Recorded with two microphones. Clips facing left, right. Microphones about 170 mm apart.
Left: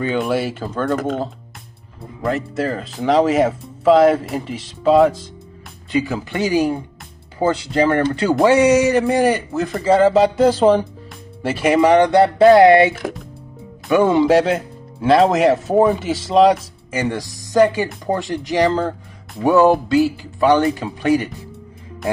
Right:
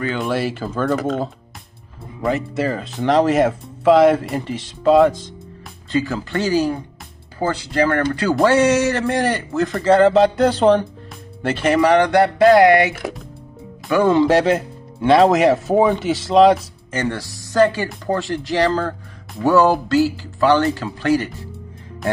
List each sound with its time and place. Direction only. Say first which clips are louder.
0.2 s speech: left 1 dB; centre (ahead or behind)
5.9 s speech: left 1 dB; 15° left (ahead or behind)
14.2 s speech: left 1 dB; centre (ahead or behind)